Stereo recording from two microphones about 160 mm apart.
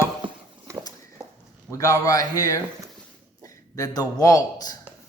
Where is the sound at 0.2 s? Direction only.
30° right (ahead or behind).